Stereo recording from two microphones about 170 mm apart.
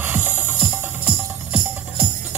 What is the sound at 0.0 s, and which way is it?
Music, 10° right (ahead or behind).